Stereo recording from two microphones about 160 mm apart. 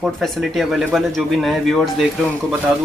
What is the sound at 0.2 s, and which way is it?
Speech, centre (ahead or behind).